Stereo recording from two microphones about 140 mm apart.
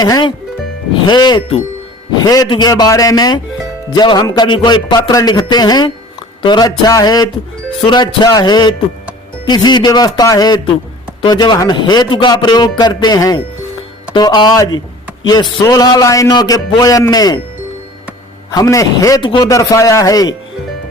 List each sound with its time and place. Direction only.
0.0 s a man's voice: 30° left (ahead or behind)
18.5 s a man's voice: 25° left (ahead or behind)
19.2 s a man's voice: 35° left (ahead or behind)
19.5 s a man's voice: 25° left (ahead or behind)